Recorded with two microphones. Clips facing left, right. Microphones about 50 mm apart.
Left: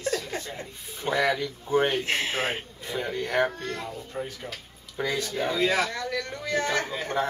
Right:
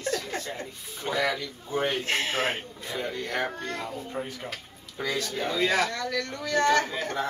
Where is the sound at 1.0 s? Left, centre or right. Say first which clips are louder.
Left 3 dB; centre.